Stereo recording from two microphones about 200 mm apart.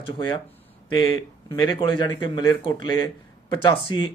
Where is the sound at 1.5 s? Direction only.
25° left (ahead or behind).